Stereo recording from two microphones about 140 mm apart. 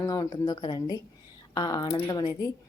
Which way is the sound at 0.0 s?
25° left (ahead or behind).